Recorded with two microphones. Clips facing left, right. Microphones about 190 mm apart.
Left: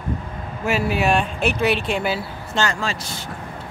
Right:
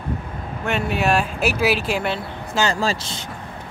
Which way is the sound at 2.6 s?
35° right (ahead or behind).